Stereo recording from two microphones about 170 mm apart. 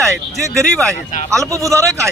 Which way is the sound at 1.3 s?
20° right (ahead or behind).